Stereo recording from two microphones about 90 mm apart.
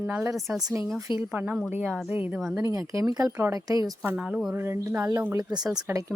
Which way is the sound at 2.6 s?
40° right (ahead or behind).